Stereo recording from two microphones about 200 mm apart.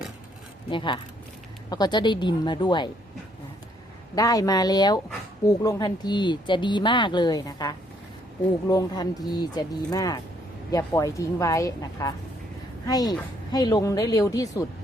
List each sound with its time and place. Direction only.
0.7 s speech: 25° left (ahead or behind)
4.1 s a woman's voice: 20° left (ahead or behind)